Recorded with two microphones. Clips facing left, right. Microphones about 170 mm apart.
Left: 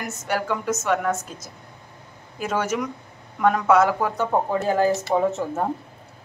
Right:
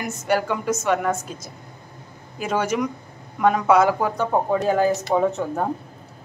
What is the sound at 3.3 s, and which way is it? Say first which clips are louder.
Speech: right 1 dB; 10° right (ahead or behind).